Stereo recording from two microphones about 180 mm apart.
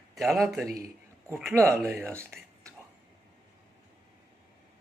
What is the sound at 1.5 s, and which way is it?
Speech, 15° right (ahead or behind).